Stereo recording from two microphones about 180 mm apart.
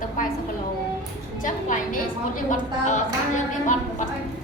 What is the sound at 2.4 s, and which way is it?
A woman's voice, 45° left (ahead or behind).